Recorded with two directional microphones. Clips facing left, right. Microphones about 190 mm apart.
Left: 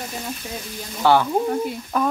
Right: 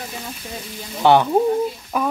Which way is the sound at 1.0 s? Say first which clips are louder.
Right 3 dB; 20° right (ahead or behind).